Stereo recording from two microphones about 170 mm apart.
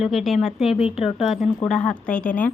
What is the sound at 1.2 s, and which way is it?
A woman's voice, centre (ahead or behind).